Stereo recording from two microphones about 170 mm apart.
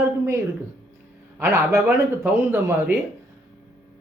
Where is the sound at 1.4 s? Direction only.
15° right (ahead or behind).